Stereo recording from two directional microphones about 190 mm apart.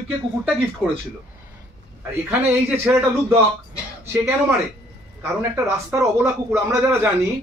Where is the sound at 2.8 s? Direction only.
10° right (ahead or behind).